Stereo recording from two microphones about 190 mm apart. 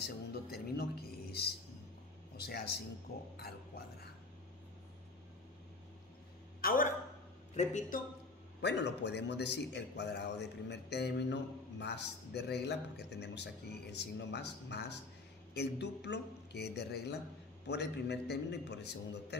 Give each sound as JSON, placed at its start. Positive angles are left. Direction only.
{"t": 0.0, "sound": "music", "side_deg": 60}
{"t": 2.3, "sound": "speech", "side_deg": 60}
{"t": 6.6, "sound": "a sound", "side_deg": 50}
{"t": 7.5, "sound": "a man's voice", "side_deg": 40}
{"t": 8.5, "sound": "a man's voice", "side_deg": 65}